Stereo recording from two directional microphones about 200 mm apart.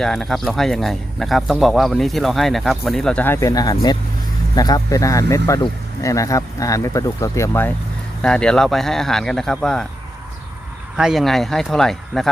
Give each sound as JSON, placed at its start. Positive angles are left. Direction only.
{"t": 0.0, "sound": "speech", "side_deg": 0}
{"t": 10.9, "sound": "speech", "side_deg": 0}